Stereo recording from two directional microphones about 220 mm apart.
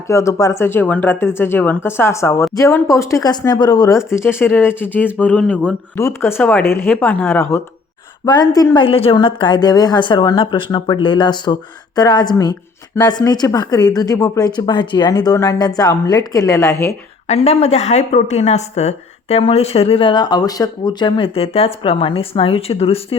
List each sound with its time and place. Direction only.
0.1 s speech: 15° left (ahead or behind)
17.2 s speech: 30° left (ahead or behind)